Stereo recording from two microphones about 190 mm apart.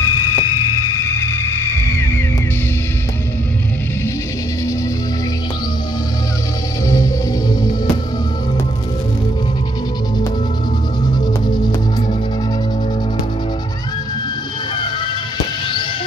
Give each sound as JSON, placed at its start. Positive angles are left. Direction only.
{"t": 0.0, "sound": "music", "side_deg": 15}